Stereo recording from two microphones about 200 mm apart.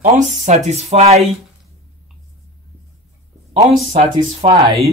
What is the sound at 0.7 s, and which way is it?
Speech, 35° right (ahead or behind).